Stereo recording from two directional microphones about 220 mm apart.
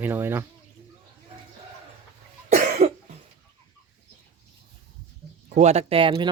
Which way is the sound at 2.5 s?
35° right (ahead or behind).